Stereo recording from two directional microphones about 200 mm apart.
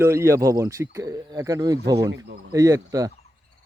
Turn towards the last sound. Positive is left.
turn(degrees=-15)  # may be behind; listen again after turning